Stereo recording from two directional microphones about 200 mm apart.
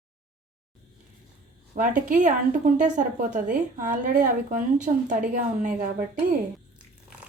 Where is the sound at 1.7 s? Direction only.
40° right (ahead or behind).